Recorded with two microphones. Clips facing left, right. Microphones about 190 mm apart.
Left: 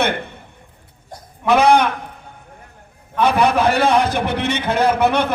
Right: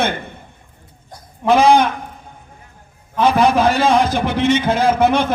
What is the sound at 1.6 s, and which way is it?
Speech, 60° left (ahead or behind).